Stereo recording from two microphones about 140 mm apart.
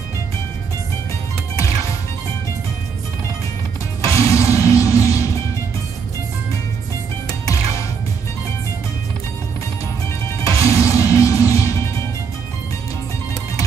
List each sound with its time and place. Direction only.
4.0 s music: 20° left (ahead or behind)
7.4 s music: 20° left (ahead or behind)
10.4 s music: 20° left (ahead or behind)